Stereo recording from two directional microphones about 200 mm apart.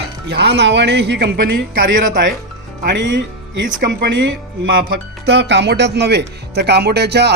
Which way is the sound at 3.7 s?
50° right (ahead or behind).